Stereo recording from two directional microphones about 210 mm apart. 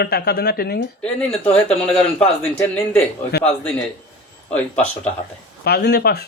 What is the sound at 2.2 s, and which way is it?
Speech, 5° left (ahead or behind).